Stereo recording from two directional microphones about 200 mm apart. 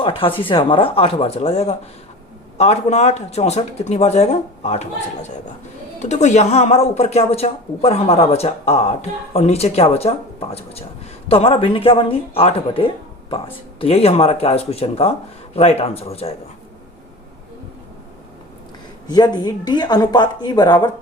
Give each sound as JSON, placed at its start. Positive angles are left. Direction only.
{"t": 0.0, "sound": "speech", "side_deg": 25}
{"t": 6.0, "sound": "speech", "side_deg": 35}
{"t": 19.0, "sound": "speech", "side_deg": 20}